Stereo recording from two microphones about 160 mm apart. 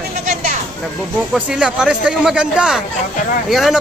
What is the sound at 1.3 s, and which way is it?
Speech, 5° right (ahead or behind).